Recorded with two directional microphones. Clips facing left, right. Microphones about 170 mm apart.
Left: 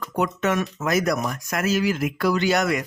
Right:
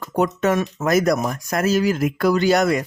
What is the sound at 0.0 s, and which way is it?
Speech, 35° right (ahead or behind).